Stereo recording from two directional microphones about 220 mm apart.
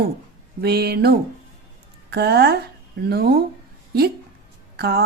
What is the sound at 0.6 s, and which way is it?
A woman's voice, 45° right (ahead or behind).